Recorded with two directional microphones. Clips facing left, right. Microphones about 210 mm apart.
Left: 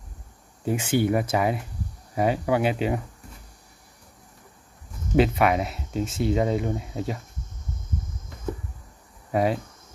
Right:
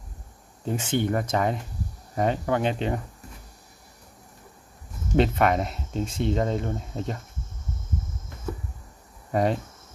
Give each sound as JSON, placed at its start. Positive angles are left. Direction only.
{"t": 0.7, "sound": "speech", "side_deg": 10}
{"t": 5.1, "sound": "speech", "side_deg": 5}
{"t": 6.6, "sound": "speech", "side_deg": 15}
{"t": 9.3, "sound": "speech", "side_deg": 5}